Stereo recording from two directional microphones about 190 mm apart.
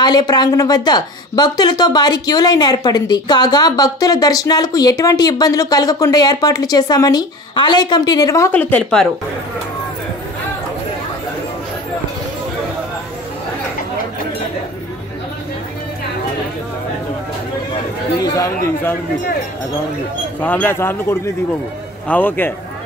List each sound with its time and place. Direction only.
0.0 s speech: 20° left (ahead or behind)
18.2 s a man's voice: 15° left (ahead or behind)
20.3 s speech: 10° left (ahead or behind)